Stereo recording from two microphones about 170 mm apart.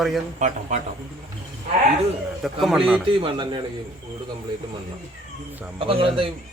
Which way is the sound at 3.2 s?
30° right (ahead or behind).